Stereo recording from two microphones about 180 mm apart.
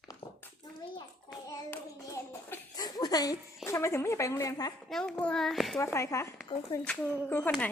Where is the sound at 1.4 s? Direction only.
15° left (ahead or behind).